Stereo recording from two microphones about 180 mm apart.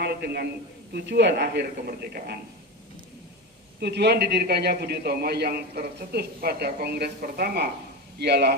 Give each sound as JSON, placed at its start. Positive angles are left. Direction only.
{"t": 0.0, "sound": "a sound", "side_deg": -65}
{"t": 0.9, "sound": "a man's voice", "side_deg": -70}
{"t": 3.8, "sound": "a man's voice", "side_deg": -65}